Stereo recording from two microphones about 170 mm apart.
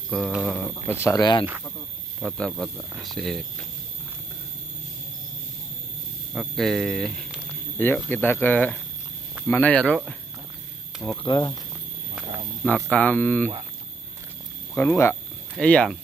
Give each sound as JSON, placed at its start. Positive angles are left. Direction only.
{"t": 0.1, "sound": "speech", "side_deg": 0}
{"t": 0.5, "sound": "speech", "side_deg": 15}
{"t": 2.2, "sound": "speech", "side_deg": 0}
{"t": 6.3, "sound": "speech", "side_deg": 0}
{"t": 11.2, "sound": "speech", "side_deg": 25}
{"t": 12.9, "sound": "speech", "side_deg": 10}
{"t": 14.7, "sound": "speech", "side_deg": 10}